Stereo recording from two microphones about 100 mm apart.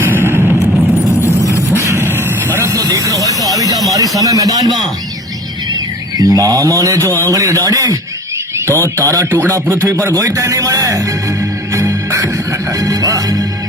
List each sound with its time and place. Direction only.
0.0 s a sound: 20° right (ahead or behind)
0.7 s vehicle: centre (ahead or behind)
1.0 s vehicle: 30° left (ahead or behind)
1.8 s a sound: 25° right (ahead or behind)
2.6 s vehicle: 30° right (ahead or behind)
3.9 s speech: 35° right (ahead or behind)
6.1 s speech: 35° right (ahead or behind)
9.0 s speech: 35° right (ahead or behind)
11.7 s music: 30° right (ahead or behind)